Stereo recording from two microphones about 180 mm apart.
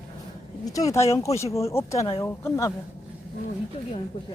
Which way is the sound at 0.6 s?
20° left (ahead or behind).